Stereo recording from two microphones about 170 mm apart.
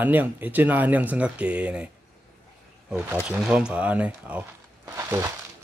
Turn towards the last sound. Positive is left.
turn(degrees=-15)  # may be behind; listen again after turning